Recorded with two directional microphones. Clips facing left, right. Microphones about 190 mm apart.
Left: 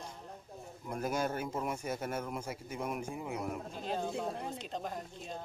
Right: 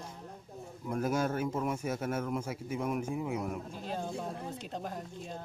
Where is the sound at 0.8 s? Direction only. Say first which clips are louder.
Right 3 dB; centre (ahead or behind).